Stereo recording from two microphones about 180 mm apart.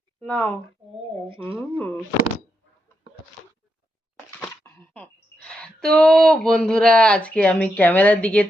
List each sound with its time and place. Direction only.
0.2 s speech: 10° left (ahead or behind)
1.3 s speech: 30° right (ahead or behind)
1.5 s speech: 10° left (ahead or behind)
4.4 s a sound: 15° left (ahead or behind)
5.4 s speech: 5° left (ahead or behind)